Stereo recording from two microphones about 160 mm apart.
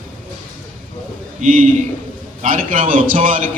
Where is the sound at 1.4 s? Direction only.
55° right (ahead or behind).